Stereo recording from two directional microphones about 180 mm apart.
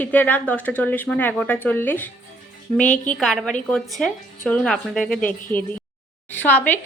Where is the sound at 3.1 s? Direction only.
Centre (ahead or behind).